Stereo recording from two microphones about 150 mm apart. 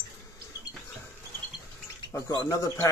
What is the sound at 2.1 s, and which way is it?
Speech, 20° left (ahead or behind).